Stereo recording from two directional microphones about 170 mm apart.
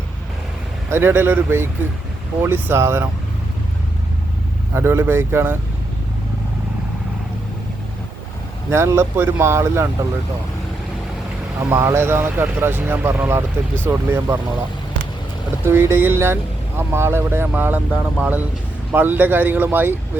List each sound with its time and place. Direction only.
0.9 s speech: 15° right (ahead or behind)
4.7 s speech: 15° right (ahead or behind)
8.7 s speech: 15° right (ahead or behind)
11.7 s speech: 15° right (ahead or behind)
15.6 s speech: 15° right (ahead or behind)